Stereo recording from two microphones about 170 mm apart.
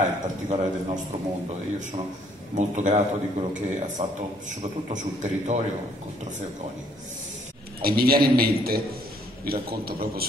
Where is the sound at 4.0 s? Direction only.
40° right (ahead or behind).